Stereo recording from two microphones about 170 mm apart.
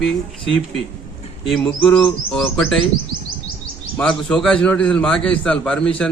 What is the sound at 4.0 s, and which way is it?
A man's voice, 5° left (ahead or behind).